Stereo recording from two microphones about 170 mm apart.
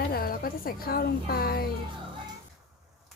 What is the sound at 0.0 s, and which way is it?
A woman's voice, 60° left (ahead or behind).